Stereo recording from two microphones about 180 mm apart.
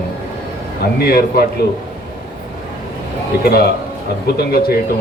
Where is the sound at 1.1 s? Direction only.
55° left (ahead or behind).